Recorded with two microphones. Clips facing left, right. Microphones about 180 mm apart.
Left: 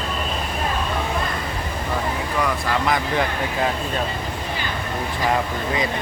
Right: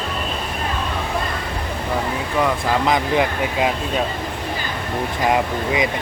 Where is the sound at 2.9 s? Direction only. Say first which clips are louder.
Right 4 dB; 15° right (ahead or behind).